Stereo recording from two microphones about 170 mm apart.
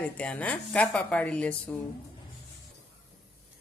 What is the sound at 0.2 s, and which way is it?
Speech, 5° left (ahead or behind).